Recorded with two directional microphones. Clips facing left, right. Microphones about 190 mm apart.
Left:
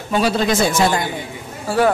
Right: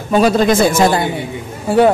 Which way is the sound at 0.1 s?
45° right (ahead or behind).